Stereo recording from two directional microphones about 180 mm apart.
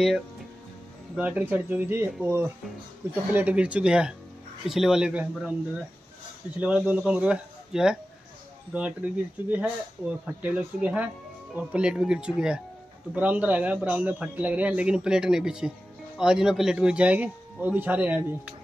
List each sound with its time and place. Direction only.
1.1 s a man's voice: 10° right (ahead or behind)
6.6 s a man's voice: 5° right (ahead or behind)